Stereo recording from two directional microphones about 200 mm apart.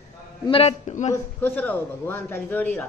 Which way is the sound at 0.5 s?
30° left (ahead or behind).